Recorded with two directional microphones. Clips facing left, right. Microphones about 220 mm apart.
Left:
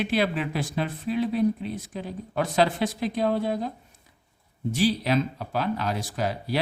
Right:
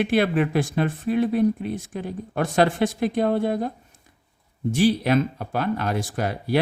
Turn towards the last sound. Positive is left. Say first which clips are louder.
# right 4 dB
turn(degrees=-55)  # may be behind; listen again after turning